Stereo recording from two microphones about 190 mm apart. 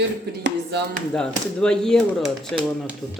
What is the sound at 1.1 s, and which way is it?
Speech, 5° left (ahead or behind).